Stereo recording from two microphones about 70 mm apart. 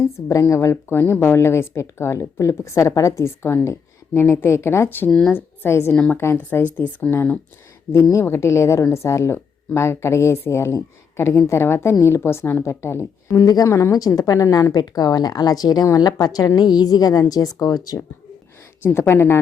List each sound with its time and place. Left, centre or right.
0.0 s a woman's voice: left
7.9 s a woman's voice: left
13.9 s a woman's voice: left
18.8 s a woman's voice: left